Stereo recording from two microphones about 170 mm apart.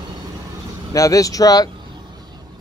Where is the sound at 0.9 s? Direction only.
20° left (ahead or behind).